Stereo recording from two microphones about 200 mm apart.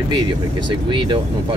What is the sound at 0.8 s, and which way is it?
Speech, 25° right (ahead or behind).